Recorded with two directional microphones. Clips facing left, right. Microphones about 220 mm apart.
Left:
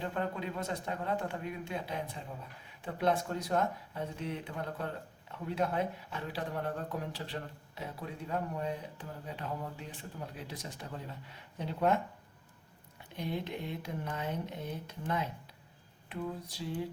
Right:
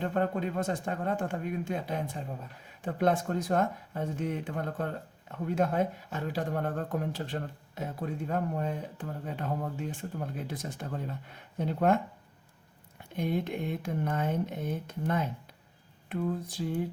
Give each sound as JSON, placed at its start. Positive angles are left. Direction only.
{"t": 0.0, "sound": "speech", "side_deg": -50}
{"t": 13.1, "sound": "speech", "side_deg": -50}